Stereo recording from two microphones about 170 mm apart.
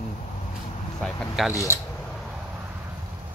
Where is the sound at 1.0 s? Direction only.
Centre (ahead or behind).